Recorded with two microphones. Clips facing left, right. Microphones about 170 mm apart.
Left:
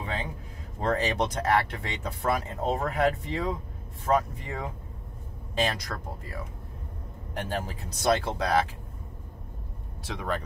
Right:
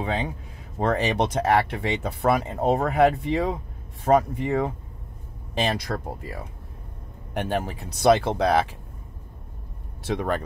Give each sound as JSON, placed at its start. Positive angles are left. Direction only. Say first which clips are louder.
{"t": 0.0, "sound": "speech", "louder": "right 7 dB", "side_deg": -70}
{"t": 7.3, "sound": "speech", "louder": "right 6 dB", "side_deg": -65}
{"t": 10.0, "sound": "speech", "louder": "right 6 dB", "side_deg": -55}